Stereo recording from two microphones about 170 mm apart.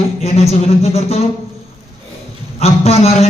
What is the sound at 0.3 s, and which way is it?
Speech, 40° left (ahead or behind).